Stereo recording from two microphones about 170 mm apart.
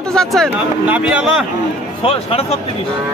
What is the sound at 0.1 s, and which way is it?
Speech, centre (ahead or behind).